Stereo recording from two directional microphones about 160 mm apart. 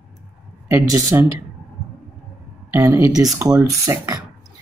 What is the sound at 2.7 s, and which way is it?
Speech, 20° right (ahead or behind).